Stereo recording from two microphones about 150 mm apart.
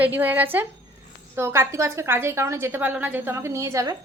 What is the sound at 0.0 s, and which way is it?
A woman's voice, 10° right (ahead or behind).